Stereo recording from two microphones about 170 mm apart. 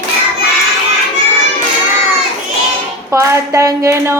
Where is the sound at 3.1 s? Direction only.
15° right (ahead or behind).